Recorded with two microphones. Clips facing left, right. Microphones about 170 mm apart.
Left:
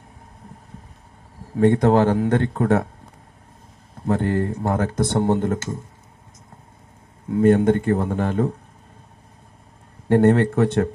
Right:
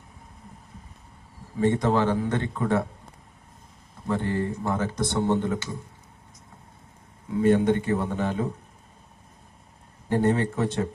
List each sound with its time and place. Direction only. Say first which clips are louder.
1.5 s speech: left 6 dB; 60° left (ahead or behind)
2.1 s speech: left 7 dB; 65° left (ahead or behind)
4.0 s speech: left 5 dB; 55° left (ahead or behind)
7.3 s speech: left 5 dB; 50° left (ahead or behind)
10.1 s speech: left 7 dB; 65° left (ahead or behind)